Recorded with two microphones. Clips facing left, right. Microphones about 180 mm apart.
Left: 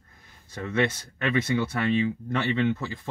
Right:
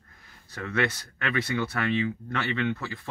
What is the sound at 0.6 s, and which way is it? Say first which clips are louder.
Speech: left 2 dB; 25° left (ahead or behind).